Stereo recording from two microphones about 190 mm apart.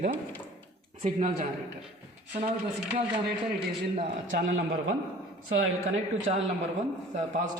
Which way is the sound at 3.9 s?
45° right (ahead or behind).